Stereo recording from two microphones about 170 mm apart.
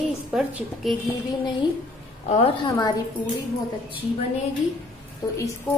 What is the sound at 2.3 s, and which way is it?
Speech, 30° left (ahead or behind).